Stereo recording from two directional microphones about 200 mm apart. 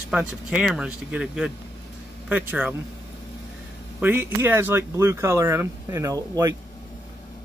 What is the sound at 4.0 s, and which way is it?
Speech, 10° right (ahead or behind).